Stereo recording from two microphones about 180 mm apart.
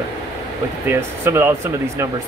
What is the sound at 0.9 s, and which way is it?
Speech, 15° right (ahead or behind).